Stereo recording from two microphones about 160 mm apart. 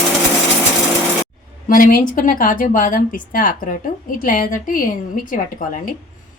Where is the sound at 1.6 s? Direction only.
60° left (ahead or behind).